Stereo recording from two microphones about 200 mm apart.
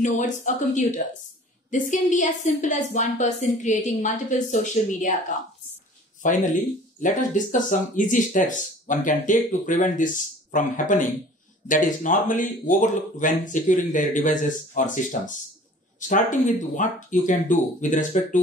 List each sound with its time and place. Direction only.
0.0 s speech: 40° left (ahead or behind)